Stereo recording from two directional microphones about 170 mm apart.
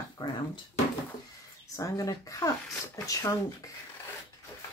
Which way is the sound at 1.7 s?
20° left (ahead or behind).